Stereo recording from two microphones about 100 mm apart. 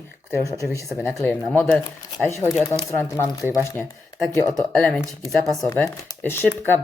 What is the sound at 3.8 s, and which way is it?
Speech, 15° left (ahead or behind).